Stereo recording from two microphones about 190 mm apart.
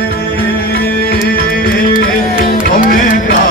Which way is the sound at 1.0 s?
50° left (ahead or behind).